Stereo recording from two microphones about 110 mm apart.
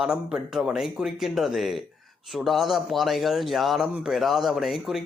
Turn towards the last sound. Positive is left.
turn(degrees=-5)  # may be behind; listen again after turning